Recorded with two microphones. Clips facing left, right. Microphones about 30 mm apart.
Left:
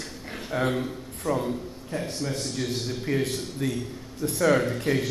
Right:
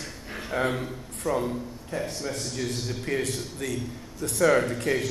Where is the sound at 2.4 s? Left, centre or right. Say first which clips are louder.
Left 1 dB; centre.